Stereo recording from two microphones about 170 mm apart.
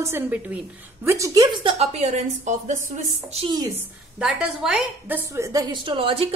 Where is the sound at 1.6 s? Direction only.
40° right (ahead or behind).